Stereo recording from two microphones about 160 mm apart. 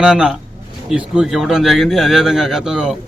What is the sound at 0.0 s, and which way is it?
A man's voice, 5° right (ahead or behind).